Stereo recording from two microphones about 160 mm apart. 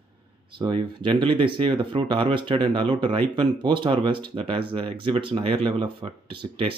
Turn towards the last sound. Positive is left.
turn(degrees=-30)  # may be behind; listen again after turning